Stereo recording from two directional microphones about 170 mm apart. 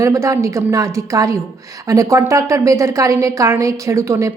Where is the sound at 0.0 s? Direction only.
20° right (ahead or behind).